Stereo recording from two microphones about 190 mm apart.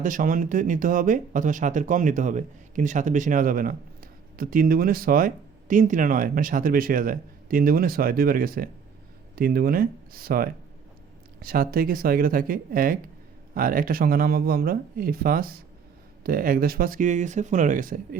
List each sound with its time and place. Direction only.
0.0 s speech: 45° right (ahead or behind)